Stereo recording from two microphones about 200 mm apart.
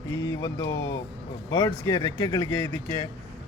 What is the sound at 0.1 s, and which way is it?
A man's voice, 15° left (ahead or behind).